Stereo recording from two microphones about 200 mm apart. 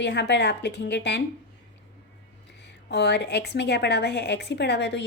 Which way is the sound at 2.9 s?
60° left (ahead or behind).